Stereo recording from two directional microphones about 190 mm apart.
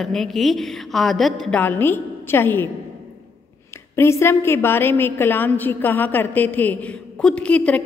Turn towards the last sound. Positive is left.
turn(degrees=5)  # may be behind; listen again after turning